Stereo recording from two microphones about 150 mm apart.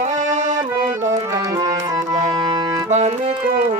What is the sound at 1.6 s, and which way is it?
Music, 55° right (ahead or behind).